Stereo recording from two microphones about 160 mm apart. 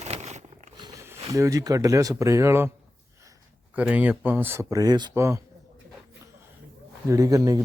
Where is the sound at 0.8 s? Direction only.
20° right (ahead or behind).